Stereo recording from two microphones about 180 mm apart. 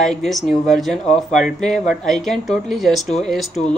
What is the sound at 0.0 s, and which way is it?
Speech, centre (ahead or behind).